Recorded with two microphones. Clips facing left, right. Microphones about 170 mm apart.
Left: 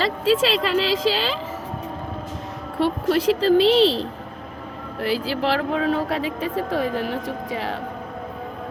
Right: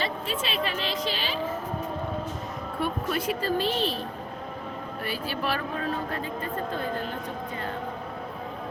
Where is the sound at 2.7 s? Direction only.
75° left (ahead or behind); by 7.8 s 90° left.